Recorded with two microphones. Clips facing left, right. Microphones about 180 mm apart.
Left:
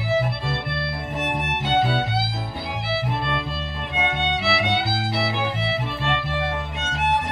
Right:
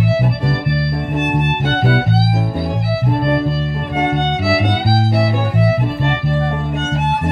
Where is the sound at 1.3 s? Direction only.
55° right (ahead or behind).